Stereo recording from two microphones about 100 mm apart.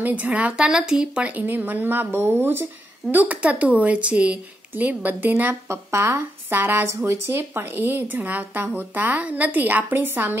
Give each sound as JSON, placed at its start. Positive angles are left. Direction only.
{"t": 0.0, "sound": "speech", "side_deg": -15}